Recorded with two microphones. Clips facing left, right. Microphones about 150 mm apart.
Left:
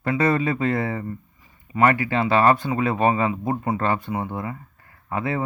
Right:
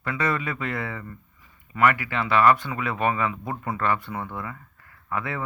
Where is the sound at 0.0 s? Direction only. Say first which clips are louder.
Left 6 dB; 30° left (ahead or behind).